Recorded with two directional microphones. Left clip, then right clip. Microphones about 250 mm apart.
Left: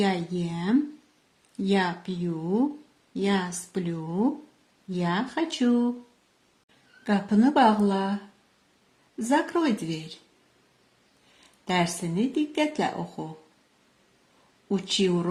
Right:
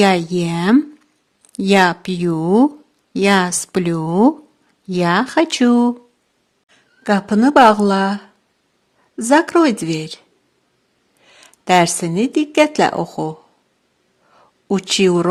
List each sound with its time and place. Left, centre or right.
0.0 s speech: right
7.0 s speech: right
11.3 s speech: right
14.7 s speech: right